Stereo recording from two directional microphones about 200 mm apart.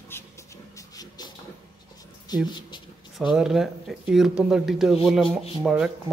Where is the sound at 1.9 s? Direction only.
20° left (ahead or behind).